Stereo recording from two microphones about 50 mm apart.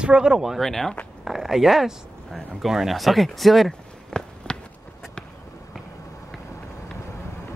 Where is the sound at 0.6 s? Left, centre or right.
Centre.